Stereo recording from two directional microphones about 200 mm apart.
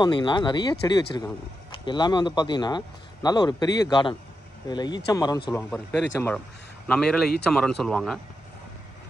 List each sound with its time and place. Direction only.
0.0 s speech: 20° left (ahead or behind)
5.5 s a man's voice: 10° left (ahead or behind)